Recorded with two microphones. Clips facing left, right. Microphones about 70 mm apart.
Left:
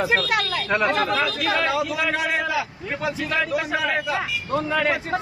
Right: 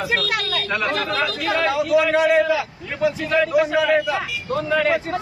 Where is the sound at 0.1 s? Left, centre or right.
Centre.